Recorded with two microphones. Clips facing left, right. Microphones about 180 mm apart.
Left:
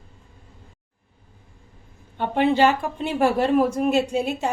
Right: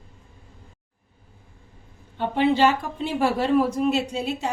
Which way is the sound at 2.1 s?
50° left (ahead or behind).